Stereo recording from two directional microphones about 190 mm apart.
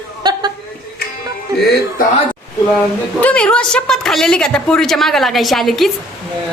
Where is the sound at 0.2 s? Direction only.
25° right (ahead or behind).